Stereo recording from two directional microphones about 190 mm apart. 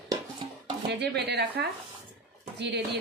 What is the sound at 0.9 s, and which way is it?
A woman's voice, 60° right (ahead or behind).